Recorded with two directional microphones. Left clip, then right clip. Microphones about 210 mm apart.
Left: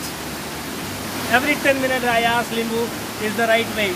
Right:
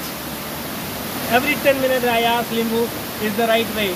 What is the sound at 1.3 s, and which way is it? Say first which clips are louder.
Speech: right 1 dB; 5° left (ahead or behind).